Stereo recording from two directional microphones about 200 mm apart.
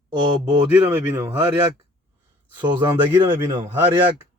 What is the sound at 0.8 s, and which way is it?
Speech, 10° right (ahead or behind).